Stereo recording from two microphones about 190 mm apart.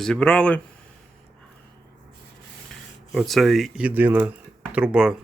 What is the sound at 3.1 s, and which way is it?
Speech, centre (ahead or behind).